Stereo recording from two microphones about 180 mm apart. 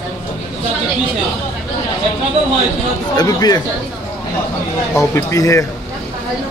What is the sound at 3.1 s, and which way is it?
Speech, 20° left (ahead or behind).